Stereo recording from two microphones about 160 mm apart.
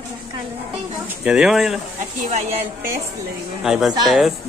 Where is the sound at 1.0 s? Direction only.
5° right (ahead or behind).